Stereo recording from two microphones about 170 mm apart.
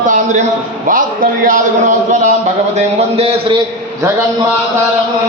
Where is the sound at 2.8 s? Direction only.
40° right (ahead or behind).